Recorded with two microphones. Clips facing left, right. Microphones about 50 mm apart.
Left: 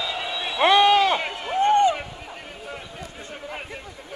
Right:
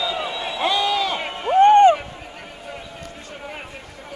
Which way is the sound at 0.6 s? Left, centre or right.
Left.